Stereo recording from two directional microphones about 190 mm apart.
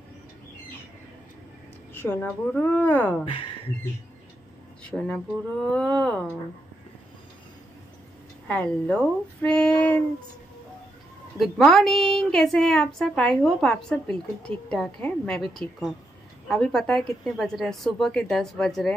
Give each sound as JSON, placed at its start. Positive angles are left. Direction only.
{"t": 2.0, "sound": "a woman's voice", "side_deg": 10}
{"t": 3.3, "sound": "speech", "side_deg": 30}
{"t": 4.8, "sound": "a woman's voice", "side_deg": 5}
{"t": 8.5, "sound": "a woman's voice", "side_deg": 5}
{"t": 11.3, "sound": "a woman's voice", "side_deg": 0}